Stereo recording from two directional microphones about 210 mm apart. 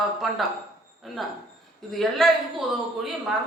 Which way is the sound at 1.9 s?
Centre (ahead or behind).